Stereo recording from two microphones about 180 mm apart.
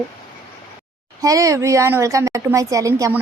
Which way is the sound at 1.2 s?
20° right (ahead or behind).